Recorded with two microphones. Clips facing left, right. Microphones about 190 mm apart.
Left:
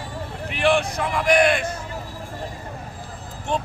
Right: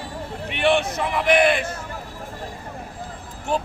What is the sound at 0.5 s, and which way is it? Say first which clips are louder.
Speech: even; centre (ahead or behind).